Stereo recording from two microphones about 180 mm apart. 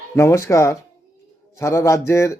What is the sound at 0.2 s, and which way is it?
Speech, 15° left (ahead or behind).